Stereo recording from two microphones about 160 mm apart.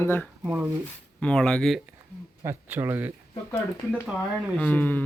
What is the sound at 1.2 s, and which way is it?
Speech, 5° left (ahead or behind).